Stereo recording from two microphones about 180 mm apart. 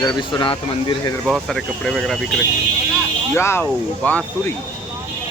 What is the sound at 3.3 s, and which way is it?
Speech, 15° left (ahead or behind).